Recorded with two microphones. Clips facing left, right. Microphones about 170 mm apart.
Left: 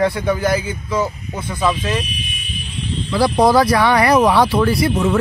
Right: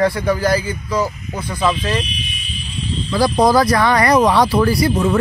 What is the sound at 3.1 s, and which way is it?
Speech, 10° left (ahead or behind).